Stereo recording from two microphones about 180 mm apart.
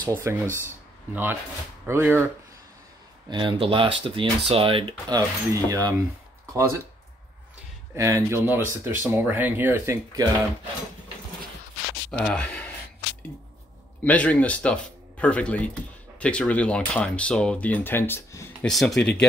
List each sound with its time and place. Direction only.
0.1 s speech: 15° right (ahead or behind)
3.3 s speech: 25° right (ahead or behind)
7.9 s speech: 15° right (ahead or behind)
12.1 s speech: 5° left (ahead or behind)
14.0 s speech: 10° left (ahead or behind)
18.7 s speech: centre (ahead or behind)